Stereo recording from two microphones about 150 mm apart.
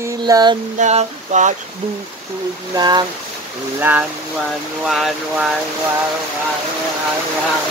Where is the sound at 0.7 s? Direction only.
50° right (ahead or behind).